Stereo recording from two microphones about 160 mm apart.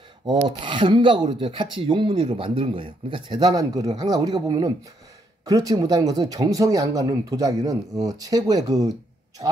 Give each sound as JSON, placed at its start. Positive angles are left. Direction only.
{"t": 0.3, "sound": "filing", "side_deg": -30}
{"t": 5.4, "sound": "speech", "side_deg": -20}